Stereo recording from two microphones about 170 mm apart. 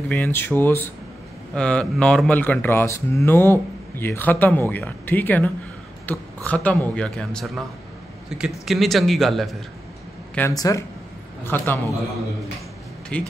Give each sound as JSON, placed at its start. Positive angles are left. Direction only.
{"t": 0.1, "sound": "a man's voice", "side_deg": 10}
{"t": 10.5, "sound": "speech", "side_deg": 20}
{"t": 13.1, "sound": "speech", "side_deg": 5}